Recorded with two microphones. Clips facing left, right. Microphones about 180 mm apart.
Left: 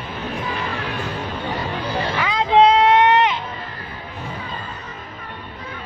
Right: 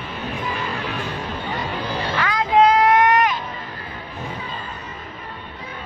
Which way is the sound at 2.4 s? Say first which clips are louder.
Left 2 dB; 25° left (ahead or behind).